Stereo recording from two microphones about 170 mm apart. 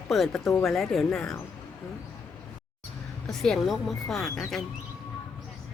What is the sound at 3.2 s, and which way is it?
A woman's voice, centre (ahead or behind).